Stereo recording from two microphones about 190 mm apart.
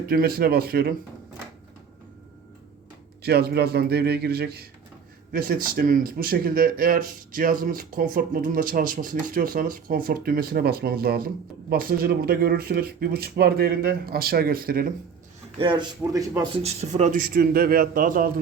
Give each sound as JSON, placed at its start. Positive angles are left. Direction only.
{"t": 0.1, "sound": "speech", "side_deg": -50}
{"t": 3.2, "sound": "a man's voice", "side_deg": -55}
{"t": 15.5, "sound": "speech", "side_deg": -25}
{"t": 16.6, "sound": "speech", "side_deg": -35}